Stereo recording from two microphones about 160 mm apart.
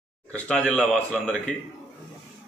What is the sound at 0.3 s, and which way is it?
A man's voice, 5° left (ahead or behind).